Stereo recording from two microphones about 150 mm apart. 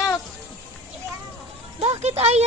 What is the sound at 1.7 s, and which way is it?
Speech, 40° right (ahead or behind).